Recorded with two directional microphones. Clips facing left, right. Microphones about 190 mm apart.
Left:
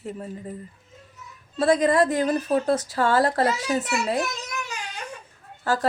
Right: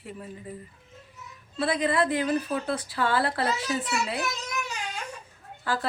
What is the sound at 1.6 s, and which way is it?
Speech, 45° left (ahead or behind).